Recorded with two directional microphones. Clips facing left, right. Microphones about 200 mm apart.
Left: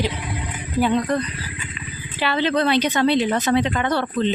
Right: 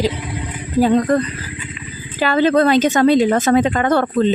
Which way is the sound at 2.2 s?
45° right (ahead or behind).